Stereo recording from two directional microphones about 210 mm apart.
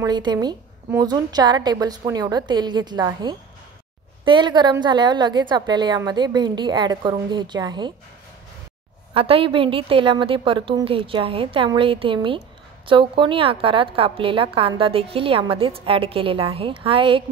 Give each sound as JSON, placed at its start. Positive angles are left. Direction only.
{"t": 0.0, "sound": "a woman's voice", "side_deg": -20}
{"t": 9.1, "sound": "a woman's voice", "side_deg": -25}